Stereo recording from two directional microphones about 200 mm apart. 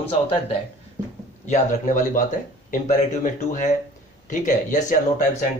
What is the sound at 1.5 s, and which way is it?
Speech, 40° left (ahead or behind).